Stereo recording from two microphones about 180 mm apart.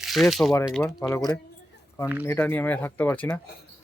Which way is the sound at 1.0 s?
20° left (ahead or behind).